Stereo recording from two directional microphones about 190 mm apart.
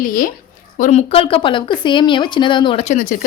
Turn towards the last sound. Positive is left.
turn(degrees=40)  # may be behind; listen again after turning